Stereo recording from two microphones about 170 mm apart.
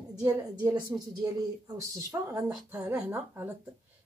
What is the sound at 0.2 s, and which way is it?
A woman's voice, 20° right (ahead or behind).